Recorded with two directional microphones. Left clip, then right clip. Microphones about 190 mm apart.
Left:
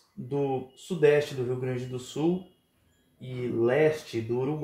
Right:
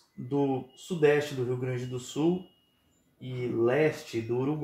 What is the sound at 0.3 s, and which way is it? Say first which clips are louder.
Speech: even; 10° right (ahead or behind).